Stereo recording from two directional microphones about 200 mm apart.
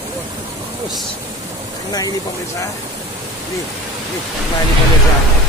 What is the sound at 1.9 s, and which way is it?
Speech, 20° left (ahead or behind).